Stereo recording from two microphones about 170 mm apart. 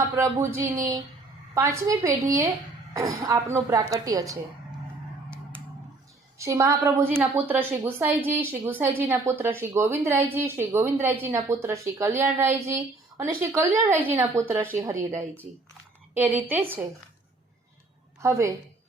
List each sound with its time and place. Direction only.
0.2 s a woman's voice: 15° right (ahead or behind)
6.4 s a woman's voice: 15° right (ahead or behind)
16.1 s a woman's voice: 10° right (ahead or behind)
18.2 s a woman's voice: 15° right (ahead or behind)